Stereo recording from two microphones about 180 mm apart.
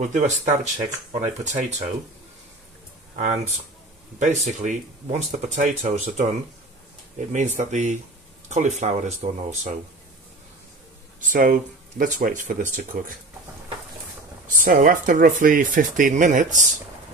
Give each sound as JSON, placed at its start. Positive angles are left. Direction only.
{"t": 0.0, "sound": "speech", "side_deg": -40}
{"t": 3.2, "sound": "speech", "side_deg": -45}
{"t": 11.1, "sound": "speech", "side_deg": -45}
{"t": 14.5, "sound": "speech", "side_deg": -50}